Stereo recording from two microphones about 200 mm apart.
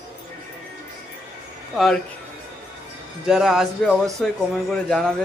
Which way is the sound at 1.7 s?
Centre (ahead or behind).